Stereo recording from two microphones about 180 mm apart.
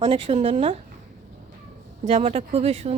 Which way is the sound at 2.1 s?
30° right (ahead or behind).